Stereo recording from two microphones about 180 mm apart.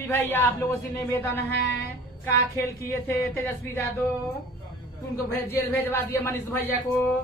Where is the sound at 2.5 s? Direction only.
15° left (ahead or behind).